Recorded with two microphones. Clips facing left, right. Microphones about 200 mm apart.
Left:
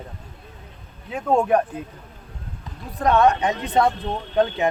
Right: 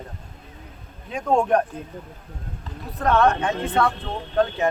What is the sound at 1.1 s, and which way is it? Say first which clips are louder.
Speech: left 1 dB; 5° left (ahead or behind).